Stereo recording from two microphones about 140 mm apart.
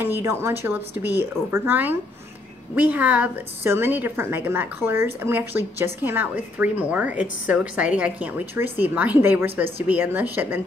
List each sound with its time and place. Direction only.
0.0 s a woman's voice: 15° right (ahead or behind)